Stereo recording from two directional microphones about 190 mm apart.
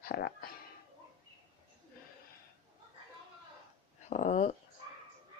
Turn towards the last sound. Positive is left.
turn(degrees=40)  # may be behind; listen again after turning